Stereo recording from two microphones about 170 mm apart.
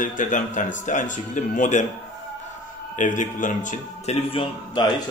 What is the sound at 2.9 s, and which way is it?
A man's voice, 45° left (ahead or behind).